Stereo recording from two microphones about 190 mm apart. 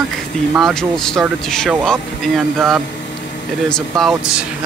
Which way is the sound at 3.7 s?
Centre (ahead or behind).